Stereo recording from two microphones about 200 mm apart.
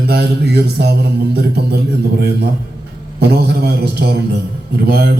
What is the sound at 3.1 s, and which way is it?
A man's voice, 50° right (ahead or behind).